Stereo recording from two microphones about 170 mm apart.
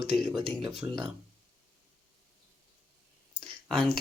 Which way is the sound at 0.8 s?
15° right (ahead or behind).